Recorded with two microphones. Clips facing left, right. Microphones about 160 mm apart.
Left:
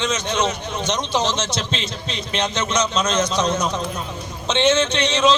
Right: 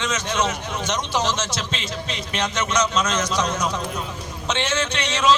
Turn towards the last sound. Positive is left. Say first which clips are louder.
# left 5 dB
turn(degrees=20)  # may be behind; listen again after turning